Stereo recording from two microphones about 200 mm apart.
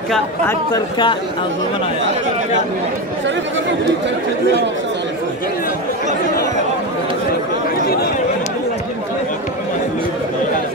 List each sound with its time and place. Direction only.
0.5 s speech: 20° left (ahead or behind)